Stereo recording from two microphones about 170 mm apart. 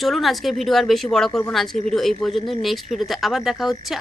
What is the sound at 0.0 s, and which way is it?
Speech, centre (ahead or behind).